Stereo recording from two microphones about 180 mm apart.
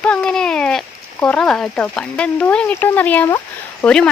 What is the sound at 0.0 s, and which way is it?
Speech, 5° left (ahead or behind).